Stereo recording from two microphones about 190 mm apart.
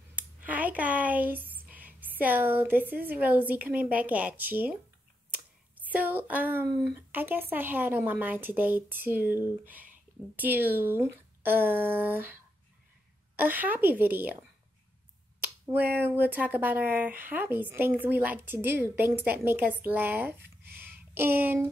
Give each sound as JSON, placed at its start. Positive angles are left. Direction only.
{"t": 0.1, "sound": "speech", "side_deg": -10}
{"t": 5.8, "sound": "speech", "side_deg": -10}
{"t": 13.4, "sound": "speech", "side_deg": -10}
{"t": 15.6, "sound": "speech", "side_deg": -10}
{"t": 20.4, "sound": "a sound", "side_deg": -55}
{"t": 20.8, "sound": "a sound", "side_deg": -10}